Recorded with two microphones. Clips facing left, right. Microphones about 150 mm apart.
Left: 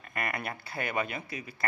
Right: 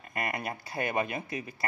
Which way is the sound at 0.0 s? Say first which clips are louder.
Right 1 dB; 25° right (ahead or behind).